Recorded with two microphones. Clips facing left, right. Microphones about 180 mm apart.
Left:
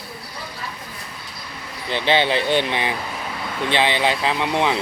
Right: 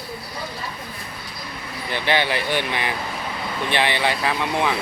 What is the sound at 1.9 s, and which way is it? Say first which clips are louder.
Speech: left 3 dB; 20° left (ahead or behind).